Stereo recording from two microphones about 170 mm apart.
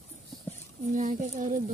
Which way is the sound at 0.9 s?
45° right (ahead or behind).